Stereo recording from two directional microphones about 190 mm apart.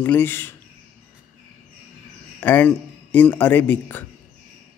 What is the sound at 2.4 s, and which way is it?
A man's voice, 10° left (ahead or behind).